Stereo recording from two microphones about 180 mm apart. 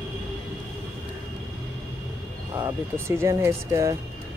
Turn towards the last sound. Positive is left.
turn(degrees=-15)  # may be behind; listen again after turning